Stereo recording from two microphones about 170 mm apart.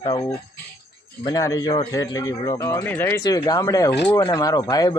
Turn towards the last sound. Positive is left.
turn(degrees=20)  # may be behind; listen again after turning